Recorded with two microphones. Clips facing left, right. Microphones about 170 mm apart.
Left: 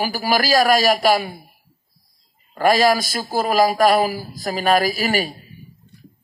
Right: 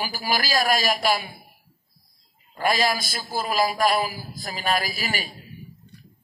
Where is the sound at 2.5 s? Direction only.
45° left (ahead or behind).